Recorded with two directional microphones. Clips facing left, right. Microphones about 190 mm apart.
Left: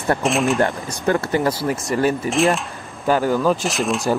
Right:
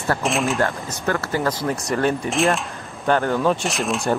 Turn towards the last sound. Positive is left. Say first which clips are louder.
# left 2 dB
turn(degrees=0)  # may be behind; listen again after turning